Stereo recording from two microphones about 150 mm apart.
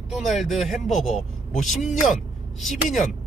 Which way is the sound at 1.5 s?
55° left (ahead or behind).